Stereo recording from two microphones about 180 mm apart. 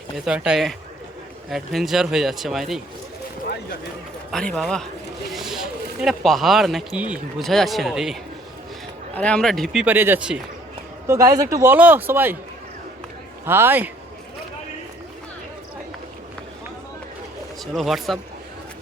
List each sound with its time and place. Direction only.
0.3 s speech: 5° right (ahead or behind)
4.3 s speech: centre (ahead or behind)
9.8 s a man's voice: 10° right (ahead or behind)
13.4 s a man's voice: 15° right (ahead or behind)
17.7 s speech: centre (ahead or behind)